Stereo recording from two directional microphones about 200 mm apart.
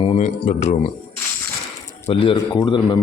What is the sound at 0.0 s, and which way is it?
Speech, 30° left (ahead or behind).